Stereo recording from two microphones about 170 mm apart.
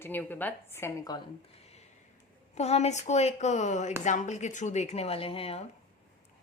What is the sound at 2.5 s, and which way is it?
Speech, 40° left (ahead or behind).